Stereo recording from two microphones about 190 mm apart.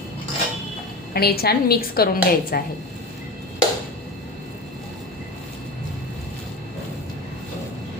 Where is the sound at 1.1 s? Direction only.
55° left (ahead or behind).